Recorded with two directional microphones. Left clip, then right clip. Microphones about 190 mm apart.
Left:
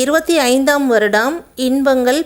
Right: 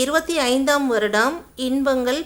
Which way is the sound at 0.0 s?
30° left (ahead or behind).